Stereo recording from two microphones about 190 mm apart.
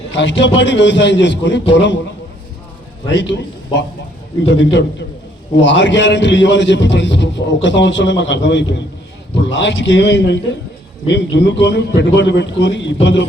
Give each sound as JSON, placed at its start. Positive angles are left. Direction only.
{"t": 0.2, "sound": "a man's voice", "side_deg": 70}
{"t": 3.2, "sound": "a man's voice", "side_deg": 70}